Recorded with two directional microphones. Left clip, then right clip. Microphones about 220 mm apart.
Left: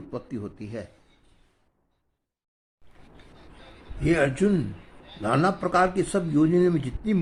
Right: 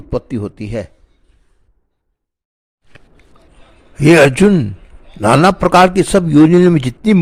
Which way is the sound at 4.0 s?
45° right (ahead or behind).